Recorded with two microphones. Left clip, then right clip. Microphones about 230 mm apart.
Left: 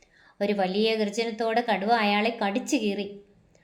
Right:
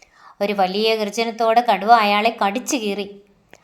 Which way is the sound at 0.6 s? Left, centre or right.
Centre.